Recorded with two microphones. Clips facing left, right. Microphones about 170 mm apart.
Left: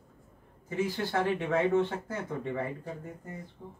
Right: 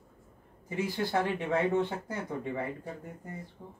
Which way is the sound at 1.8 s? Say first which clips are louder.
Left 2 dB; 15° right (ahead or behind).